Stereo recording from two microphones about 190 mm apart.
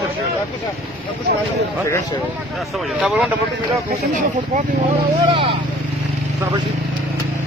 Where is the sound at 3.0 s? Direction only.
5° right (ahead or behind).